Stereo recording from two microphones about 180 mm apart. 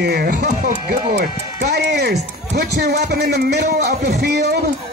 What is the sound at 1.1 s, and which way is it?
Speech, 65° right (ahead or behind).